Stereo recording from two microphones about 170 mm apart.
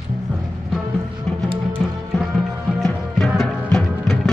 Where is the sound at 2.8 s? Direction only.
5° left (ahead or behind).